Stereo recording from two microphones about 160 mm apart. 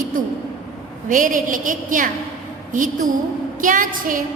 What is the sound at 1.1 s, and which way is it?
A woman's voice, 55° right (ahead or behind).